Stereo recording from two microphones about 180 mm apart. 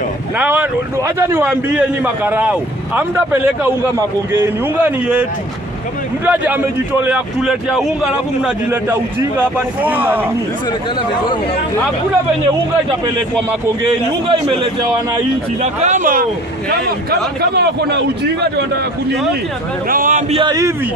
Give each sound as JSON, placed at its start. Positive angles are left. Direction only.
{"t": 0.4, "sound": "speech", "side_deg": -10}
{"t": 6.2, "sound": "speech", "side_deg": -10}
{"t": 15.6, "sound": "a man's voice", "side_deg": -40}
{"t": 19.9, "sound": "speech", "side_deg": -50}
{"t": 20.3, "sound": "a man's voice", "side_deg": -20}